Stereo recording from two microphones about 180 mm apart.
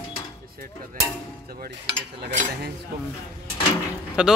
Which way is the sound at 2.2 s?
65° right (ahead or behind).